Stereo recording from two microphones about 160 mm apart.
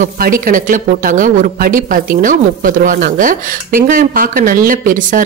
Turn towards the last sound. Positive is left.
turn(degrees=-60)  # may be behind; listen again after turning